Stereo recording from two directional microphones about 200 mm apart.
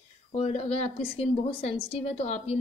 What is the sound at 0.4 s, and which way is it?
A woman's voice, 30° left (ahead or behind).